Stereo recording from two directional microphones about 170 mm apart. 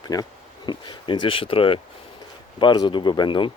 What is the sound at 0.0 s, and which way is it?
Speech, 25° left (ahead or behind).